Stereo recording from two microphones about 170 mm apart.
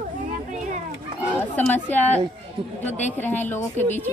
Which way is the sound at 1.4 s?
10° left (ahead or behind).